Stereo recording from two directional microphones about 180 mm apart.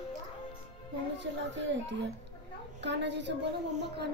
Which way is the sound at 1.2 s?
80° right.